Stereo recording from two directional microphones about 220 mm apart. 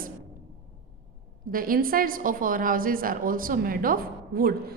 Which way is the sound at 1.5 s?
40° right (ahead or behind).